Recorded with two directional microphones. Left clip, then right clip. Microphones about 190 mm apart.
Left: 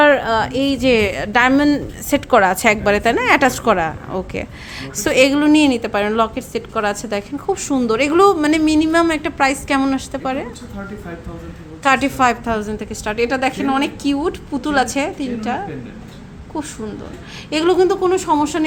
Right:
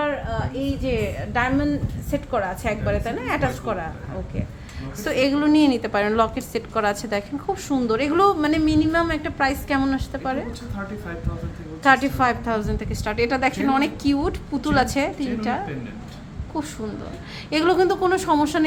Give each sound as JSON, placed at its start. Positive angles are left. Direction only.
{"t": 0.0, "sound": "a woman's voice", "side_deg": 70}
{"t": 4.9, "sound": "a woman's voice", "side_deg": 25}
{"t": 11.8, "sound": "a woman's voice", "side_deg": 20}